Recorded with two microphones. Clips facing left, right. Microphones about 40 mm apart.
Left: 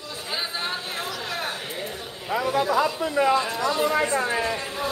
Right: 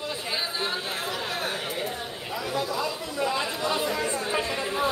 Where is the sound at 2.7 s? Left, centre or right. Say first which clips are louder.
Left 7 dB; left.